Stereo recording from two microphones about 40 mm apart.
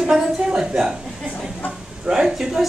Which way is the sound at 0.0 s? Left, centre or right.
Right.